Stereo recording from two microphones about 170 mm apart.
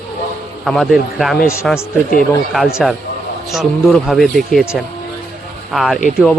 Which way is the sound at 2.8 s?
Centre (ahead or behind).